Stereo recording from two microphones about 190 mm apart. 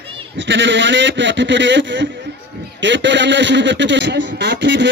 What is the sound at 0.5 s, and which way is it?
A man's voice, 70° right (ahead or behind).